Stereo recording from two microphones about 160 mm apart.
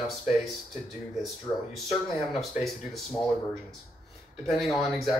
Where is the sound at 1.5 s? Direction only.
20° left (ahead or behind).